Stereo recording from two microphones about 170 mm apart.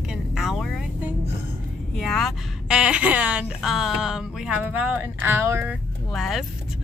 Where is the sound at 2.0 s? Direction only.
Centre (ahead or behind).